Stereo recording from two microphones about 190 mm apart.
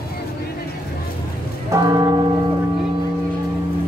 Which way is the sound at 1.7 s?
20° right (ahead or behind).